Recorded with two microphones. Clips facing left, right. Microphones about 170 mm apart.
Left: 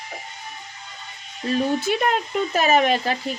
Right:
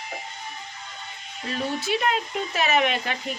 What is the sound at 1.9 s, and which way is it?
Speech, 50° left (ahead or behind).